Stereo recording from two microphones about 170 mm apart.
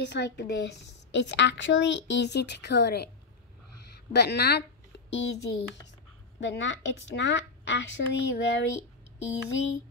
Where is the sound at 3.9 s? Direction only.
75° left (ahead or behind); by 5.2 s 90° left.